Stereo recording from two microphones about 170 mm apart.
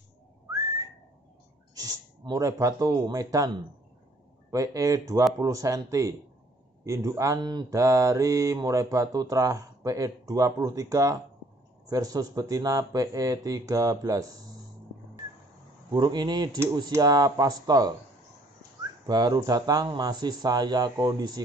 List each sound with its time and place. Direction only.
1.8 s mantra: 20° right (ahead or behind)
15.9 s mantra: 25° right (ahead or behind)
19.0 s mantra: 25° right (ahead or behind)